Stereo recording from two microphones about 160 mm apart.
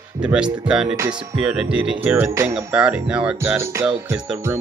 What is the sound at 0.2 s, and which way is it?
Speech, 5° right (ahead or behind).